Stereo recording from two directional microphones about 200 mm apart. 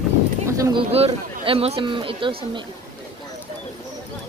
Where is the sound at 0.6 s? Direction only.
25° right (ahead or behind).